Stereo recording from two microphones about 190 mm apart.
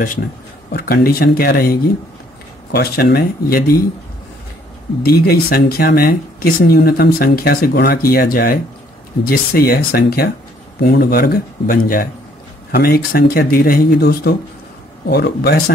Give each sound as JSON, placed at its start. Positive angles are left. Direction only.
{"t": 0.7, "sound": "speech", "side_deg": 55}
{"t": 5.0, "sound": "speech", "side_deg": 55}